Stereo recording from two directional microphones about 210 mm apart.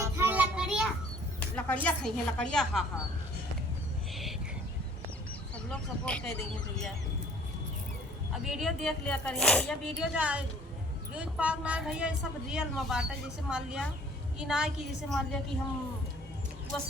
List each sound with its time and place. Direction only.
0.0 s child singing: 10° right (ahead or behind)
1.5 s a woman's voice: 5° left (ahead or behind)
4.1 s a sound: centre (ahead or behind)
5.7 s a woman's voice: 5° left (ahead or behind)
8.3 s a woman's voice: centre (ahead or behind)
16.7 s a woman's voice: 5° left (ahead or behind)